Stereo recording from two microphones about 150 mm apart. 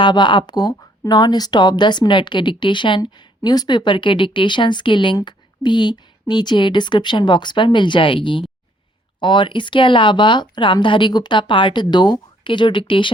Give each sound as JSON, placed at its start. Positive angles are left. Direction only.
{"t": 0.0, "sound": "speech", "side_deg": 30}